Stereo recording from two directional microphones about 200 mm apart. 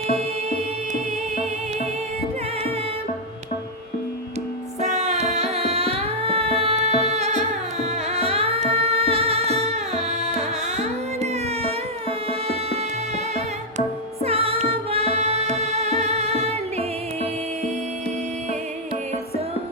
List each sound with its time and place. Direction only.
4.8 s tabla: 35° right (ahead or behind)
14.3 s music: 30° right (ahead or behind)